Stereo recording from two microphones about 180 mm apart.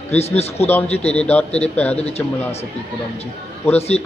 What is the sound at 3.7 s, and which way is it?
Speech, 35° left (ahead or behind).